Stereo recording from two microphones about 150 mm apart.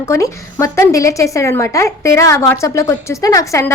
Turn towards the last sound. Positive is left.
turn(degrees=20)  # may be behind; listen again after turning